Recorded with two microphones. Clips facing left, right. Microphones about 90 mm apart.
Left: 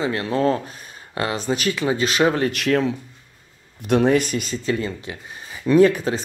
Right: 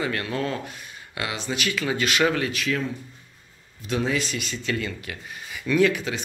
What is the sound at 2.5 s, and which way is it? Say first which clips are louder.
Speech: left 7 dB; 55° left (ahead or behind).